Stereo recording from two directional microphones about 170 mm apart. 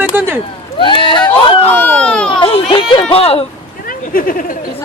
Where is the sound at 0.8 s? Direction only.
30° left (ahead or behind).